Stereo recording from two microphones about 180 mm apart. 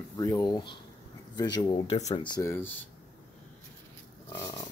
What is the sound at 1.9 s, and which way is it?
Speech, 35° left (ahead or behind).